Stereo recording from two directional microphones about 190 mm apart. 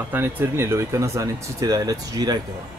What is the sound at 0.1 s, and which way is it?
Speech, 10° right (ahead or behind).